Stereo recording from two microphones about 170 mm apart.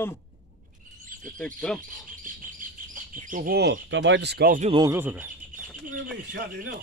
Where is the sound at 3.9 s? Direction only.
90° right; by 4.6 s 70° right (ahead or behind).